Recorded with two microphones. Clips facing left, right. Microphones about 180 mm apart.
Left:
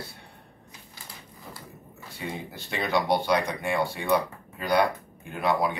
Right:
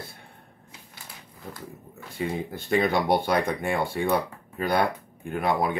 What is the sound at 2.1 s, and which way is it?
Speech, 50° right (ahead or behind).